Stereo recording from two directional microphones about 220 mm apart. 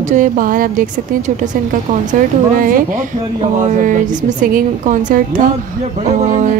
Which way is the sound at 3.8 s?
35° right (ahead or behind).